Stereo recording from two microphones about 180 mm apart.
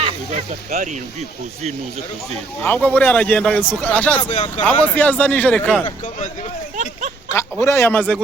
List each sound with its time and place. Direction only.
0.0 s speech: 35° right (ahead or behind)
2.6 s speech: 10° left (ahead or behind)
4.2 s speech: 35° left (ahead or behind)
4.9 s speech: 10° left (ahead or behind)
7.3 s a man's voice: 15° left (ahead or behind)